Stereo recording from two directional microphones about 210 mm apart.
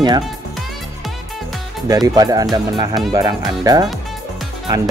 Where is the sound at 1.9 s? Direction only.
15° right (ahead or behind).